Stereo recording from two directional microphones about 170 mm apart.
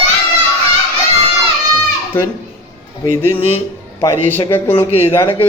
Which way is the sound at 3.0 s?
15° left (ahead or behind).